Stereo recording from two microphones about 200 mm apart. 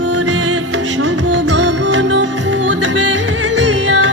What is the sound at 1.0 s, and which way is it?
Music, 65° right (ahead or behind).